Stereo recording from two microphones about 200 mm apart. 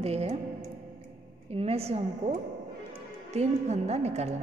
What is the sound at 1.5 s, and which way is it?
A woman's voice, 30° right (ahead or behind).